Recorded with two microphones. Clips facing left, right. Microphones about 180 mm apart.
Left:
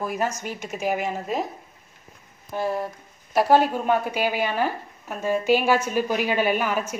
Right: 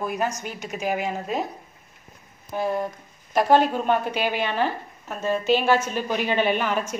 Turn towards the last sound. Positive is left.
turn(degrees=5)  # may be behind; listen again after turning